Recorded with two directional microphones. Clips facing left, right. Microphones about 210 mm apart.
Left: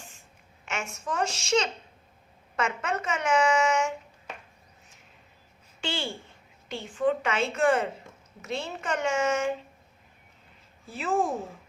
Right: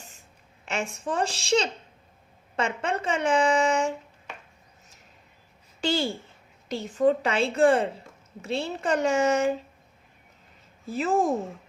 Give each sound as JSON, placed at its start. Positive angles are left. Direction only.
{"t": 0.6, "sound": "speech", "side_deg": -35}
{"t": 5.8, "sound": "a woman's voice", "side_deg": -40}
{"t": 10.8, "sound": "speech", "side_deg": -40}